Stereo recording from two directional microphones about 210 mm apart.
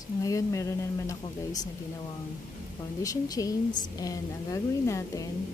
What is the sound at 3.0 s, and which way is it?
A woman's voice, 15° left (ahead or behind).